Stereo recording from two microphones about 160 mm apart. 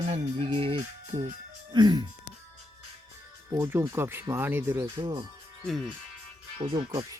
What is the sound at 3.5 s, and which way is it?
Speech, 15° right (ahead or behind).